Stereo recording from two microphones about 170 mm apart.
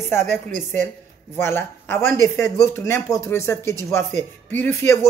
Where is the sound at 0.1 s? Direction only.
15° left (ahead or behind).